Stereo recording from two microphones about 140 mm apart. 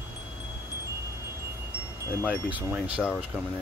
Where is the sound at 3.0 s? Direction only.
Centre (ahead or behind).